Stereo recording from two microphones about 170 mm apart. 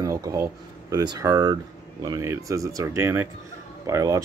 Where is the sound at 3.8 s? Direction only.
15° right (ahead or behind).